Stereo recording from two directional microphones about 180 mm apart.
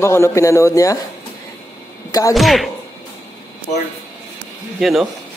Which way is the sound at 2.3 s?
Centre (ahead or behind).